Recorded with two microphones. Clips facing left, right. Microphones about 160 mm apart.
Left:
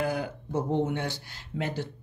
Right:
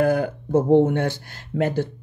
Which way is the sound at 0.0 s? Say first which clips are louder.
Right 10 dB; 50° right (ahead or behind).